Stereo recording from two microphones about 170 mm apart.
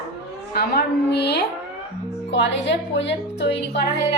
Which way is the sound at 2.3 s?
90° left.